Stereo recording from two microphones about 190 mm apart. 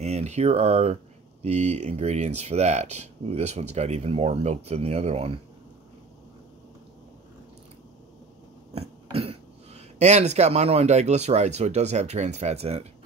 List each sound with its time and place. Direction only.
0.0 s speech: 35° right (ahead or behind)
8.7 s speech: 30° right (ahead or behind)